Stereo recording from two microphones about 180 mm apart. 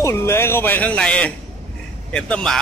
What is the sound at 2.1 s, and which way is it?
Speech, 5° left (ahead or behind).